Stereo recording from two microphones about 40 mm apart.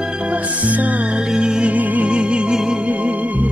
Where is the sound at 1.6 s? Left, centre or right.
Right.